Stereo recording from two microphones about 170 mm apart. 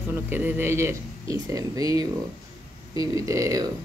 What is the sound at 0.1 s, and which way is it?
Speech, 10° right (ahead or behind).